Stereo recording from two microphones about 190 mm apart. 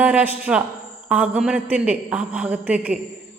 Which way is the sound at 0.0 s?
10° right (ahead or behind).